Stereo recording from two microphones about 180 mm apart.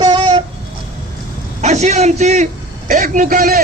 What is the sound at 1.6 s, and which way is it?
A man's voice, 40° right (ahead or behind).